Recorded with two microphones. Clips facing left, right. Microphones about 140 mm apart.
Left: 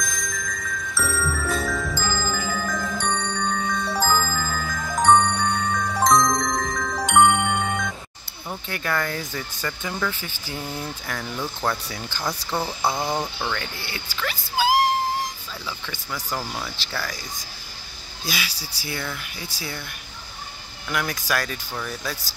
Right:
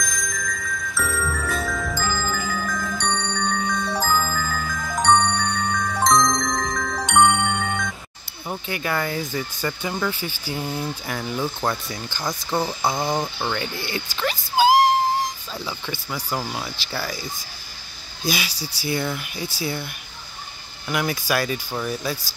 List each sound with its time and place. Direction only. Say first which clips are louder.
0.0 s jingle bell: right 1 dB; centre (ahead or behind)
5.7 s glockenspiel: even; 5° left (ahead or behind)
8.5 s speech: right 2 dB; 10° right (ahead or behind)
9.3 s speech: right 4 dB; 20° right (ahead or behind)
11.9 s speech: right 1 dB; 5° left (ahead or behind)
13.1 s speech: right 2 dB; 15° right (ahead or behind)
14.1 s a sound: right 4 dB; 20° right (ahead or behind)
15.6 s speech: right 3 dB; 15° right (ahead or behind)
18.2 s speech: right 5 dB; 15° right (ahead or behind)
21.1 s speech: right 3 dB; 5° right (ahead or behind)
21.7 s speech: right 3 dB; 25° right (ahead or behind)